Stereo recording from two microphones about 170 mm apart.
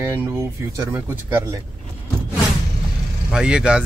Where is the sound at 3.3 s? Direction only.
5° right (ahead or behind).